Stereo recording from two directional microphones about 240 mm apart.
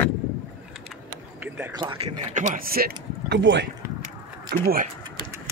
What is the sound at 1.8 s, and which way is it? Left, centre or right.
Speech, right.